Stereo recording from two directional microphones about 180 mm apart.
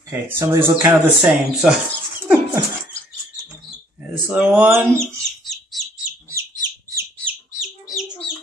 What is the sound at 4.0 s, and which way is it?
Speech, 5° right (ahead or behind).